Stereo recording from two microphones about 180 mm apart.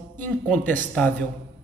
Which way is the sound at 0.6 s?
10° left (ahead or behind).